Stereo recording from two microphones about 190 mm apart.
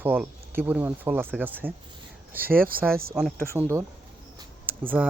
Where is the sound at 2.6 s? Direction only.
50° right (ahead or behind).